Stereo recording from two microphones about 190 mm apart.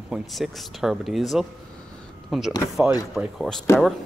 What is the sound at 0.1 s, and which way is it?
Speech, centre (ahead or behind).